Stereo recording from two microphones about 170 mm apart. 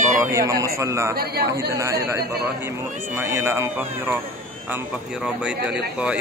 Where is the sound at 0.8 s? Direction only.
15° right (ahead or behind).